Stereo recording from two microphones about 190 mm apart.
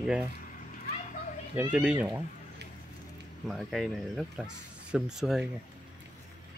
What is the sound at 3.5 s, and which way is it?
Speech, centre (ahead or behind).